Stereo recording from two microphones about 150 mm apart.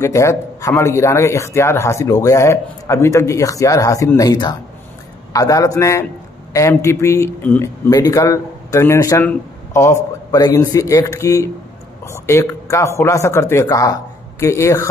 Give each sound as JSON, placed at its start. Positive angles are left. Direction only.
{"t": 0.0, "sound": "a man's voice", "side_deg": 20}